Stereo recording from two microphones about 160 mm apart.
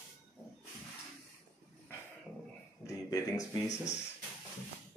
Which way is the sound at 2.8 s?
20° left (ahead or behind).